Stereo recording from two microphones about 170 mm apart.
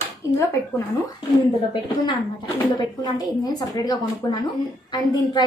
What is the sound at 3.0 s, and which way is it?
A woman's voice, 25° left (ahead or behind).